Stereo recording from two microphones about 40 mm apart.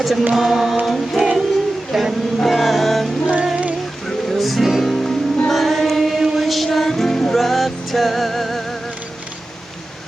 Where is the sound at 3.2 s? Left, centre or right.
Right.